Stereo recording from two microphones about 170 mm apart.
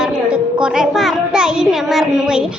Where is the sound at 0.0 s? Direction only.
5° right (ahead or behind).